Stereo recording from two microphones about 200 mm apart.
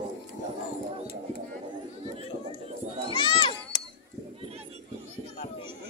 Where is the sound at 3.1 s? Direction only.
25° left (ahead or behind).